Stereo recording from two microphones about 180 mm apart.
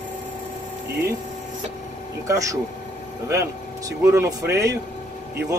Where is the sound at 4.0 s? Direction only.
20° right (ahead or behind).